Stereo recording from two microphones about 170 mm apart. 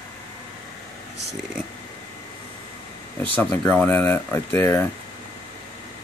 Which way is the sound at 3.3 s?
10° left (ahead or behind).